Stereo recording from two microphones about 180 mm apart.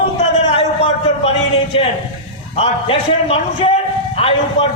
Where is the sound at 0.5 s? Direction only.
30° left (ahead or behind).